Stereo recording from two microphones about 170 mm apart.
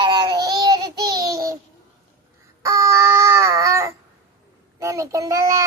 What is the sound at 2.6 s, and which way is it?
Child singing, 15° right (ahead or behind).